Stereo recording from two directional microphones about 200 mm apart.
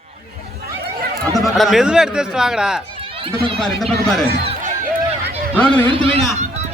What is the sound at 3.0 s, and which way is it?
Run, 25° right (ahead or behind).